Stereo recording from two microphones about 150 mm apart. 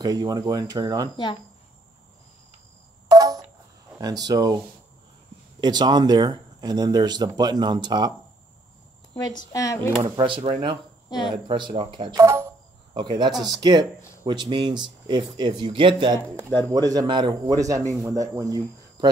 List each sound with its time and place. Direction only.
0.0 s speech: 25° right (ahead or behind)
3.1 s a sound: 25° right (ahead or behind)
4.0 s speech: 25° right (ahead or behind)
5.6 s speech: 30° right (ahead or behind)
9.5 s speech: 20° left (ahead or behind)
10.1 s speech: 35° right (ahead or behind)
11.1 s speech: 30° left (ahead or behind)
11.4 s speech: 35° right (ahead or behind)